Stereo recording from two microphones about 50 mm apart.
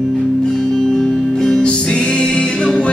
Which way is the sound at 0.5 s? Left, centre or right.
Centre.